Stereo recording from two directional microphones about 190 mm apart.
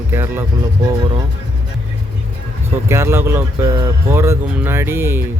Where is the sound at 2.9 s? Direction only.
15° right (ahead or behind).